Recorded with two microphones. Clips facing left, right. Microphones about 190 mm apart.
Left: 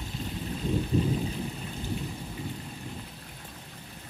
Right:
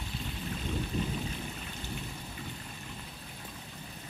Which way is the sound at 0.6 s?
35° left (ahead or behind).